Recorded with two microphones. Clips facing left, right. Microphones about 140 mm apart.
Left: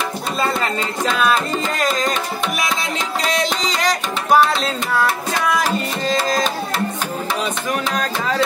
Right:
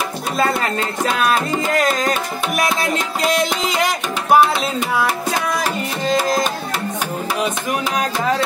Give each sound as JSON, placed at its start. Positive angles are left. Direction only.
{"t": 1.0, "sound": "music", "side_deg": -5}
{"t": 1.9, "sound": "music", "side_deg": -50}
{"t": 3.2, "sound": "music", "side_deg": -10}